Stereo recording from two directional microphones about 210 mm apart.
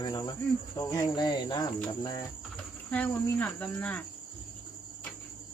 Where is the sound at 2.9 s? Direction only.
10° left (ahead or behind).